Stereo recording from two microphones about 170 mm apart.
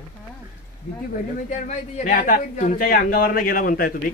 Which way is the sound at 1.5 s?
45° left (ahead or behind).